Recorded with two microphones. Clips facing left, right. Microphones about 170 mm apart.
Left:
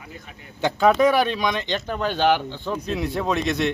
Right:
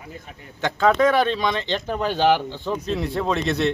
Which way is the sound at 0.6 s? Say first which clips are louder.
Left 1 dB; 15° left (ahead or behind).